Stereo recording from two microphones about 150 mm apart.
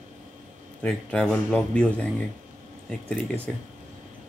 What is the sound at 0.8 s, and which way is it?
Speech, 10° left (ahead or behind).